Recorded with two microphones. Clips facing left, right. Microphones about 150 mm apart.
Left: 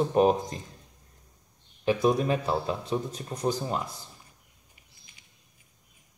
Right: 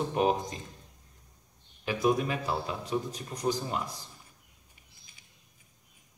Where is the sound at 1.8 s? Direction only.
30° left (ahead or behind).